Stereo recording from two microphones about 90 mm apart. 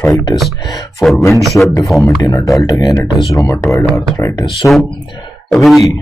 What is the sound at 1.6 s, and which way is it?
Speech, 15° left (ahead or behind).